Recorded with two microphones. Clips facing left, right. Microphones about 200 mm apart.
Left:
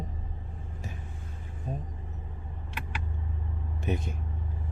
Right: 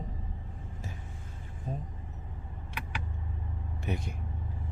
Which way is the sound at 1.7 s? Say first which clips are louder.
Left 1 dB; 10° left (ahead or behind).